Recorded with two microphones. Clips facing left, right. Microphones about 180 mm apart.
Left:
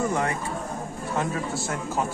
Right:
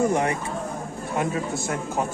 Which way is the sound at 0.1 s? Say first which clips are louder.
Right 3 dB; 20° right (ahead or behind).